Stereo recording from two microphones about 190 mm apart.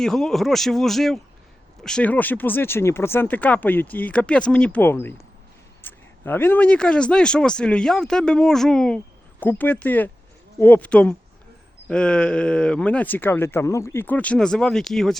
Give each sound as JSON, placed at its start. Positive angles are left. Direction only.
{"t": 0.0, "sound": "speech", "side_deg": 0}